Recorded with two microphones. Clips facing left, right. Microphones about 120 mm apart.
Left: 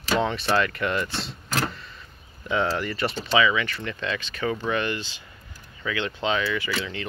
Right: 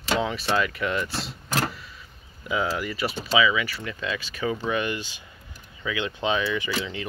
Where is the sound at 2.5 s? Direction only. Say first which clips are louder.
Left 2 dB; 5° right (ahead or behind).